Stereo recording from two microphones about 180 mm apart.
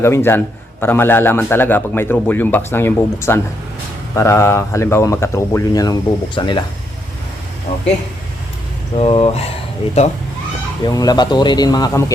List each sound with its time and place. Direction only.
0.0 s a man's voice: 15° left (ahead or behind)
7.7 s speech: 35° left (ahead or behind)
9.0 s speech: 30° left (ahead or behind)
10.8 s a man's voice: 20° left (ahead or behind)